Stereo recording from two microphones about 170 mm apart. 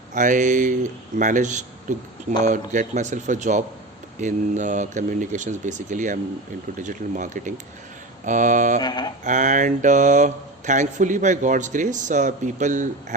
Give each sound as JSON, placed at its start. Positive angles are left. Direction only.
{"t": 0.1, "sound": "speech", "side_deg": -50}
{"t": 8.8, "sound": "a sound", "side_deg": 25}
{"t": 9.2, "sound": "speech", "side_deg": -45}